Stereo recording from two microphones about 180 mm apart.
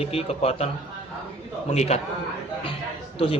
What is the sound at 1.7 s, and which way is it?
Speech, 35° left (ahead or behind).